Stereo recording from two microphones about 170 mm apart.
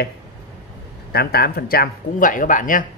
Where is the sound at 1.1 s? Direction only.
65° left (ahead or behind).